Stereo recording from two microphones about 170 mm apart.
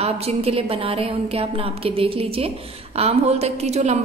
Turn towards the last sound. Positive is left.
turn(degrees=-40)  # may be behind; listen again after turning